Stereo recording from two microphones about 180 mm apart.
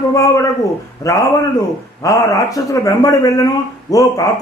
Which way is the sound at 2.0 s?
20° left (ahead or behind).